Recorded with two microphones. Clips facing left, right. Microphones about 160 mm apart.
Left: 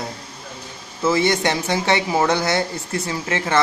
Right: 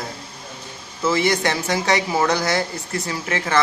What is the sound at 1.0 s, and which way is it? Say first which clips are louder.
Speech: left 1 dB; 25° left (ahead or behind).